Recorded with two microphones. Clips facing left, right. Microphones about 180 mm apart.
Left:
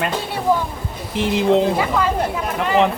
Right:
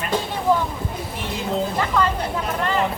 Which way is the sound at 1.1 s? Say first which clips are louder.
Left 11 dB; 85° left.